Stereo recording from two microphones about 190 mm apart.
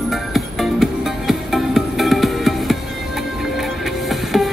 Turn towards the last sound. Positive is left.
turn(degrees=0)  # may be behind; listen again after turning